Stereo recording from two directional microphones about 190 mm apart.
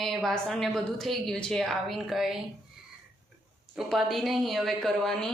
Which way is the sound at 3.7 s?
Centre (ahead or behind).